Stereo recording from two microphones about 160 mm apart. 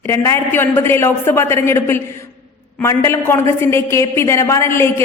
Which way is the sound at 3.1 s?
15° left (ahead or behind).